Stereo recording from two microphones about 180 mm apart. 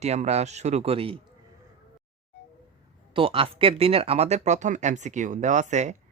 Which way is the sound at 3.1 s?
30° right (ahead or behind).